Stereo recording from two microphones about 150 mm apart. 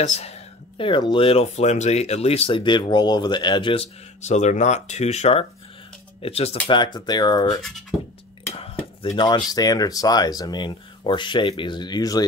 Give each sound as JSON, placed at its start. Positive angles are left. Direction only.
{"t": 0.0, "sound": "speech", "side_deg": 50}
{"t": 0.7, "sound": "speech", "side_deg": 35}
{"t": 6.7, "sound": "speech", "side_deg": 30}
{"t": 9.1, "sound": "speech", "side_deg": 30}